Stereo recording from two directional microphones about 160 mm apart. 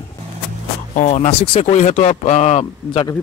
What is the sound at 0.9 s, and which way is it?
Speech, 45° left (ahead or behind).